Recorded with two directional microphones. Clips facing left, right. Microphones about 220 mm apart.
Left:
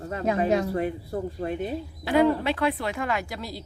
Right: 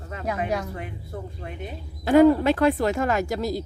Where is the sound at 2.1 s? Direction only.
45° right (ahead or behind).